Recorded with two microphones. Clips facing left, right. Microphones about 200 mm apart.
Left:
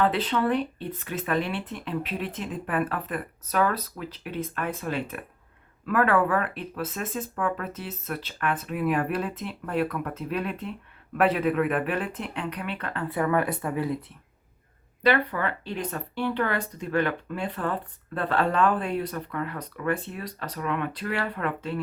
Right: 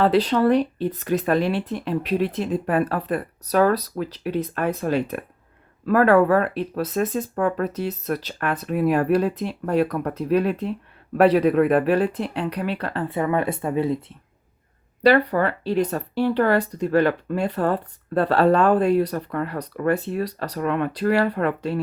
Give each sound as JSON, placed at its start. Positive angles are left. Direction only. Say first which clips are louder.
{"t": 0.0, "sound": "speech", "louder": "right 6 dB", "side_deg": -35}
{"t": 15.0, "sound": "speech", "louder": "right 7 dB", "side_deg": -40}